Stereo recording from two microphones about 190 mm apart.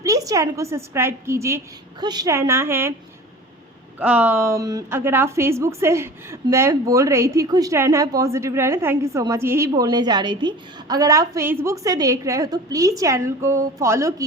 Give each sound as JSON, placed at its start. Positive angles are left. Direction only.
{"t": 0.0, "sound": "a woman's voice", "side_deg": -20}
{"t": 4.0, "sound": "a woman's voice", "side_deg": -10}